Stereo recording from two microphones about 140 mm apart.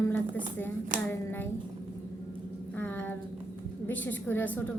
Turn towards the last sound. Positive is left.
turn(degrees=15)  # may be behind; listen again after turning